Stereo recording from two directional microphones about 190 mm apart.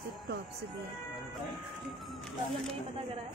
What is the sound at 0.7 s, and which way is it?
Speech, centre (ahead or behind).